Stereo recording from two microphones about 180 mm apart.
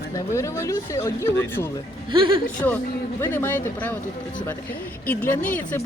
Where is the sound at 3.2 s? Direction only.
10° left (ahead or behind).